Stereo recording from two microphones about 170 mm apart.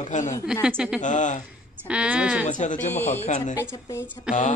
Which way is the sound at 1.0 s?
45° left (ahead or behind).